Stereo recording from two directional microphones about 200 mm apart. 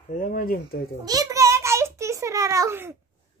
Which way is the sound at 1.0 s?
15° right (ahead or behind).